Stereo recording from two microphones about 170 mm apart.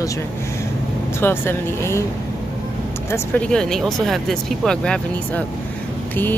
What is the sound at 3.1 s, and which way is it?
Speech, 5° left (ahead or behind).